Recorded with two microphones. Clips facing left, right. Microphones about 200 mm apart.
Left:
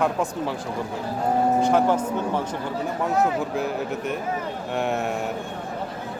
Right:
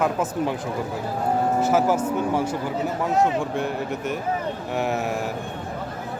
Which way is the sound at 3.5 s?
Centre (ahead or behind).